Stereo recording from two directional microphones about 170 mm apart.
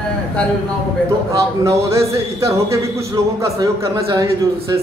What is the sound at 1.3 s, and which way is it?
A man's voice, 15° right (ahead or behind).